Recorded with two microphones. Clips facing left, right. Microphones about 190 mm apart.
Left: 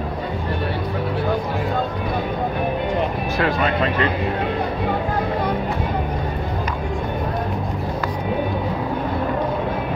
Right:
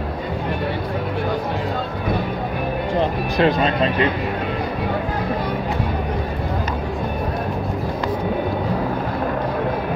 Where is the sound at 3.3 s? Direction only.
25° right (ahead or behind).